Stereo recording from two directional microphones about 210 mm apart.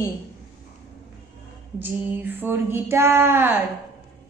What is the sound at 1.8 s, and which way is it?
Female singing, 10° right (ahead or behind).